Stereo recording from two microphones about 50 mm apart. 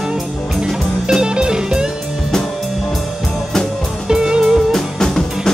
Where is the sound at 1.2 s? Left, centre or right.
Centre.